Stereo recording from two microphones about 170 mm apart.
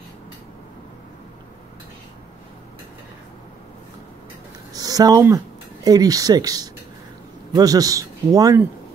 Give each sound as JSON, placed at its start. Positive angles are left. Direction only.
{"t": 4.7, "sound": "a man's voice", "side_deg": -20}